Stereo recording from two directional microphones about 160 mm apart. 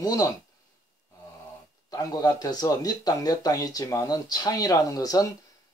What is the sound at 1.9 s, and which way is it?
Speech, 25° left (ahead or behind).